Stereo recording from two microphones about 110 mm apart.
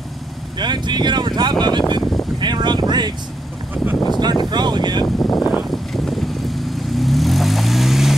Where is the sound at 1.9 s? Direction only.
40° right (ahead or behind).